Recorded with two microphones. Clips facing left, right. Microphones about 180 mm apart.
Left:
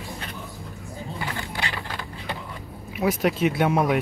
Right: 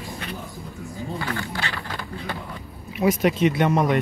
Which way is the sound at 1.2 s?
15° left (ahead or behind).